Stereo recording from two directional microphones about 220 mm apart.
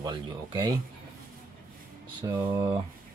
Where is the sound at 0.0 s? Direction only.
20° right (ahead or behind).